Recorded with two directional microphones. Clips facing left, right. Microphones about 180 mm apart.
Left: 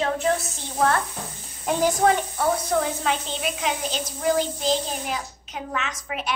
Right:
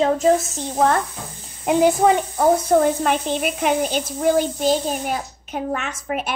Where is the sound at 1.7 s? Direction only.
15° right (ahead or behind).